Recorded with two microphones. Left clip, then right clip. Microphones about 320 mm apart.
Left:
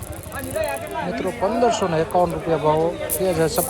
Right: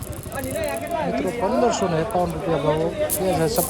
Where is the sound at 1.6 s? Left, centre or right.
Centre.